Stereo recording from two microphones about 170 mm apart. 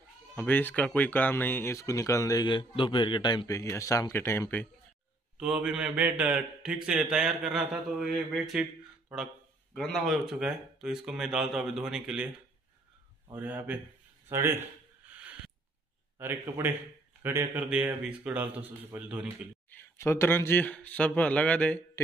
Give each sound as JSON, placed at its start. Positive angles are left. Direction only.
{"t": 0.4, "sound": "speech", "side_deg": 10}
{"t": 5.4, "sound": "a man's voice", "side_deg": -5}
{"t": 9.8, "sound": "a man's voice", "side_deg": 0}
{"t": 13.3, "sound": "a man's voice", "side_deg": -10}
{"t": 14.3, "sound": "a sound", "side_deg": -15}
{"t": 16.2, "sound": "a man's voice", "side_deg": -15}
{"t": 19.7, "sound": "speech", "side_deg": 15}